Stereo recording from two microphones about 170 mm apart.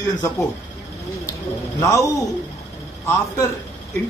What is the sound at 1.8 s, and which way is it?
Speech, 20° left (ahead or behind).